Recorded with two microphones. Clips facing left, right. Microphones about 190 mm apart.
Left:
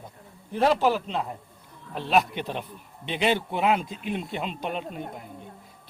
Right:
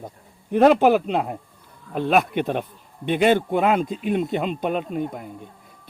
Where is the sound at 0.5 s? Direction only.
60° right (ahead or behind).